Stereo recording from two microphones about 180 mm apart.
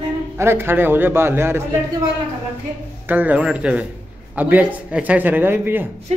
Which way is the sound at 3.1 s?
10° right (ahead or behind).